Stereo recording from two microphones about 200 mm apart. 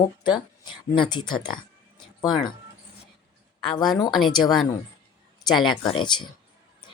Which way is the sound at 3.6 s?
Centre (ahead or behind).